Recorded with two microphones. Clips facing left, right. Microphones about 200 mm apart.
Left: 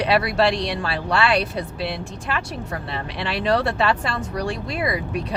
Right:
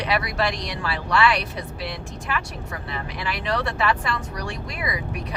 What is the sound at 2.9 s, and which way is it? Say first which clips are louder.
Speech: left 2 dB; 30° left (ahead or behind).